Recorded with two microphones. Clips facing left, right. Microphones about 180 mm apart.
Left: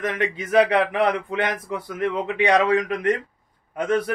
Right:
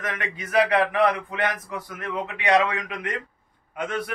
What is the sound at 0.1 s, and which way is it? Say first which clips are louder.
Speech: left 3 dB; 30° left (ahead or behind).